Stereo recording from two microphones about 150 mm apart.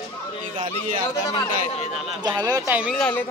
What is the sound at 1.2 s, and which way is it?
Speech, 25° left (ahead or behind).